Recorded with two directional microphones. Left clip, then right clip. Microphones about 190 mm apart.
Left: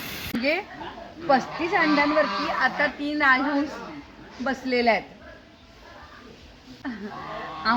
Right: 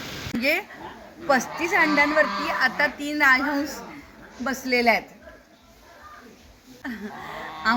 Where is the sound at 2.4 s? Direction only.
10° right (ahead or behind).